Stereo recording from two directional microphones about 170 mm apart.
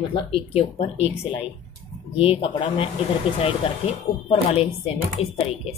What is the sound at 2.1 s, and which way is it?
Speech, 30° left (ahead or behind).